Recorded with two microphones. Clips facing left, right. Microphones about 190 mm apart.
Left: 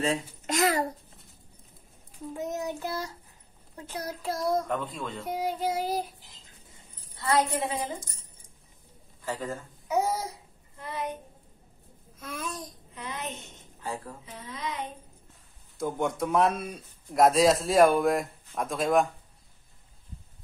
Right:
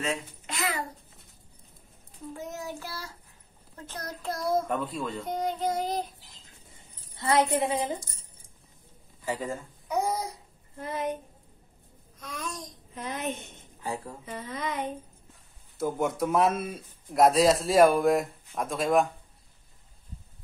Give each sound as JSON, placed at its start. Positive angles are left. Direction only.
{"t": 0.0, "sound": "a child's voice", "side_deg": 40}
{"t": 2.3, "sound": "child singing", "side_deg": 20}
{"t": 3.7, "sound": "a man's voice", "side_deg": 10}
{"t": 5.2, "sound": "child singing", "side_deg": 5}
{"t": 7.2, "sound": "a woman's voice", "side_deg": -25}
{"t": 9.2, "sound": "a man's voice", "side_deg": -15}
{"t": 9.8, "sound": "child singing", "side_deg": 5}
{"t": 10.8, "sound": "a woman's voice", "side_deg": -45}
{"t": 12.2, "sound": "a man's voice", "side_deg": 5}
{"t": 12.9, "sound": "a woman's voice", "side_deg": -45}
{"t": 13.7, "sound": "speech", "side_deg": -15}
{"t": 14.2, "sound": "speech", "side_deg": -55}
{"t": 15.8, "sound": "a man's voice", "side_deg": -5}